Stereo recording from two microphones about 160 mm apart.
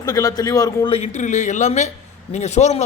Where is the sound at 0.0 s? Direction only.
20° left (ahead or behind).